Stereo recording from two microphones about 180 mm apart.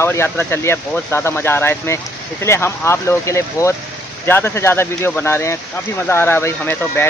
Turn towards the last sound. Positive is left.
turn(degrees=10)  # may be behind; listen again after turning